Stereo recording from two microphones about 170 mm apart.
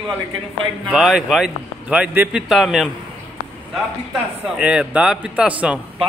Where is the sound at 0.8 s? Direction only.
Centre (ahead or behind).